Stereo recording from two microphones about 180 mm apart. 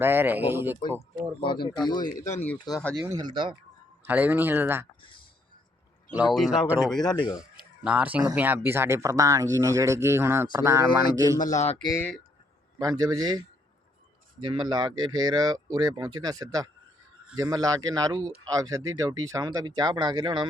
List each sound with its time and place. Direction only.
0.0 s speech: 10° right (ahead or behind)
1.4 s speech: 25° left (ahead or behind)
3.1 s speech: 25° right (ahead or behind)
4.0 s speech: 10° right (ahead or behind)
6.1 s speech: 5° right (ahead or behind)
7.0 s speech: 25° left (ahead or behind)
7.9 s speech: 10° right (ahead or behind)
11.4 s speech: 40° left (ahead or behind)
11.9 s speech: 5° left (ahead or behind)
12.8 s speech: 20° right (ahead or behind)
14.4 s speech: 25° right (ahead or behind)